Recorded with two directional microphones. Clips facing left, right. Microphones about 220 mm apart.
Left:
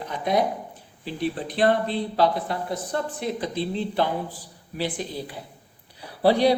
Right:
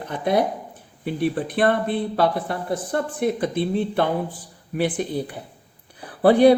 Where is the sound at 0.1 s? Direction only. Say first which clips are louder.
Right 3 dB; 55° right (ahead or behind).